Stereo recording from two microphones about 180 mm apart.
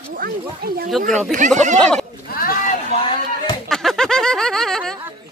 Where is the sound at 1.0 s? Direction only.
45° right (ahead or behind).